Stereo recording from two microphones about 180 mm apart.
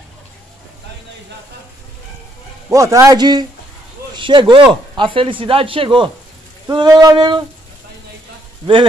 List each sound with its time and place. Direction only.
2.7 s speech: 15° right (ahead or behind)